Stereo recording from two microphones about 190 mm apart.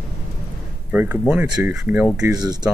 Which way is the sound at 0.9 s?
10° right (ahead or behind).